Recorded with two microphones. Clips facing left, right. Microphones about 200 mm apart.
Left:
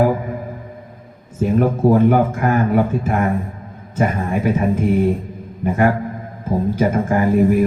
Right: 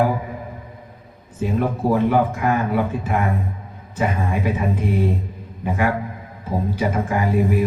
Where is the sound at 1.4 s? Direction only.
45° left (ahead or behind).